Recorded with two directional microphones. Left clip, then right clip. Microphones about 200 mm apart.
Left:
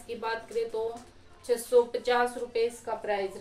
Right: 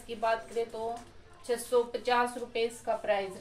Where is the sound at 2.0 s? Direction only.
25° left (ahead or behind).